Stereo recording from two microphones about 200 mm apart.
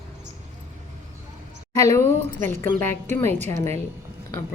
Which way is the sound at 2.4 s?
10° left (ahead or behind).